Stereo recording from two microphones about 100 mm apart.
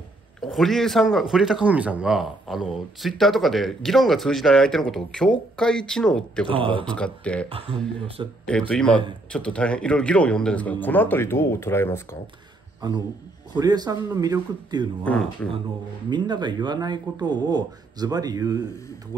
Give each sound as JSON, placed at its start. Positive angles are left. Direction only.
{"t": 0.4, "sound": "speech", "side_deg": 0}
{"t": 6.5, "sound": "speech", "side_deg": -60}
{"t": 6.8, "sound": "speech", "side_deg": 10}
{"t": 7.4, "sound": "speech", "side_deg": -70}
{"t": 8.5, "sound": "speech", "side_deg": 10}
{"t": 12.8, "sound": "speech", "side_deg": -40}
{"t": 15.1, "sound": "speech", "side_deg": 15}
{"t": 16.1, "sound": "speech", "side_deg": -45}